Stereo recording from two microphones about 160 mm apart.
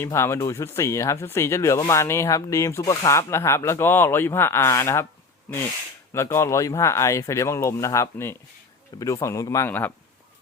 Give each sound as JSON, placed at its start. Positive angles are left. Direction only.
{"t": 0.0, "sound": "speech", "side_deg": 15}
{"t": 6.1, "sound": "a man's voice", "side_deg": 15}